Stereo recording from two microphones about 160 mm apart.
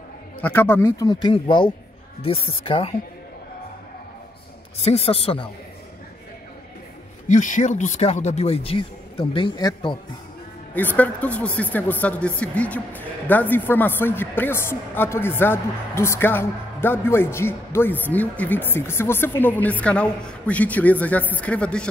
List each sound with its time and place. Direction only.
0.4 s speech: 10° left (ahead or behind); by 2.9 s 35° left (ahead or behind)
4.8 s speech: 40° left (ahead or behind)
7.2 s speech: 50° left (ahead or behind); by 9.9 s 25° left (ahead or behind)
10.7 s a woman's voice: 10° left (ahead or behind)